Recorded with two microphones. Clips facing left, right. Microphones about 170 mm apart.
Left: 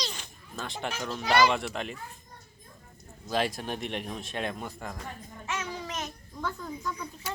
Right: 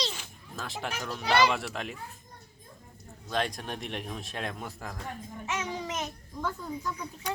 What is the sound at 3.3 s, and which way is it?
A man's voice, 5° left (ahead or behind).